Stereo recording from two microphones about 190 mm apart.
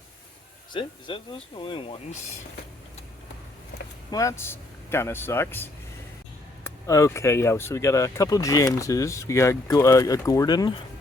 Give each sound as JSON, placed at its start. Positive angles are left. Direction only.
{"t": 0.7, "sound": "speech", "side_deg": 25}
{"t": 4.1, "sound": "speech", "side_deg": 15}
{"t": 6.7, "sound": "speech", "side_deg": 15}